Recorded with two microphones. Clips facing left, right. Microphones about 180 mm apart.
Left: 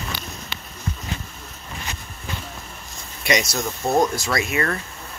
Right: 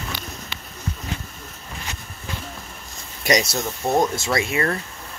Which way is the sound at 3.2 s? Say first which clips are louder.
Right 2 dB; 40° right (ahead or behind).